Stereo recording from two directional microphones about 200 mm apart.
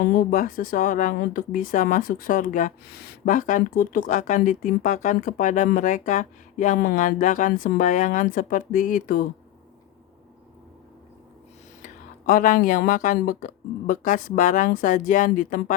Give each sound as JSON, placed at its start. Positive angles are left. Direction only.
{"t": 0.0, "sound": "speech", "side_deg": 45}
{"t": 11.8, "sound": "speech", "side_deg": 45}